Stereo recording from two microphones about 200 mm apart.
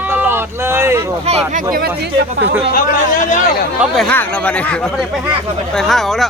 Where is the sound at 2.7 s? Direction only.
45° left (ahead or behind).